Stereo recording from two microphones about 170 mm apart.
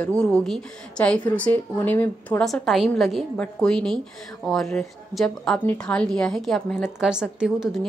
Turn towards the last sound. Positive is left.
turn(degrees=-5)  # may be behind; listen again after turning